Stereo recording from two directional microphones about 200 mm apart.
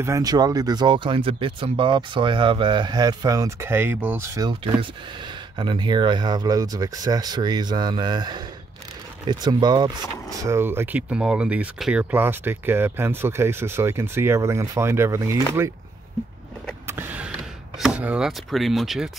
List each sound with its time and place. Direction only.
0.0 s speech: 15° right (ahead or behind)
5.6 s speech: 25° right (ahead or behind)
16.8 s a sound: 10° right (ahead or behind)
17.7 s speech: 5° right (ahead or behind)